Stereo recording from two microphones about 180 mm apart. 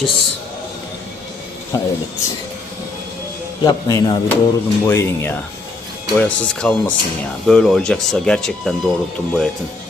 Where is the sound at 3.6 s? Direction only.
20° left (ahead or behind); by 8.9 s 5° left (ahead or behind).